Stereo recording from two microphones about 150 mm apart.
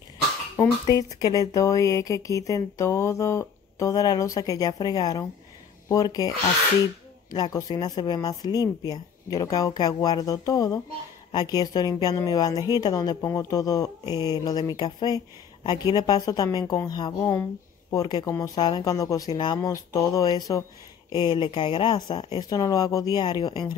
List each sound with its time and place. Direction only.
0.6 s a woman's voice: 20° left (ahead or behind)
19.3 s speech: 35° left (ahead or behind)
19.6 s a woman's voice: 20° left (ahead or behind)